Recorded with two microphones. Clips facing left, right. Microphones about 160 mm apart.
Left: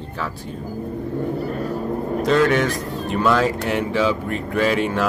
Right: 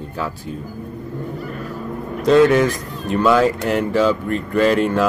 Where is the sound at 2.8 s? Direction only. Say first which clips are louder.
Left 3 dB; 40° left (ahead or behind).